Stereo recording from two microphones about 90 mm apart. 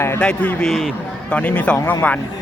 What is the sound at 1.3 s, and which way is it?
Speech, 15° left (ahead or behind).